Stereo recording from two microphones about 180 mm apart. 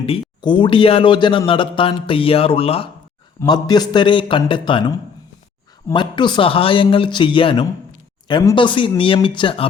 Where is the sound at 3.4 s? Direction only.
20° left (ahead or behind).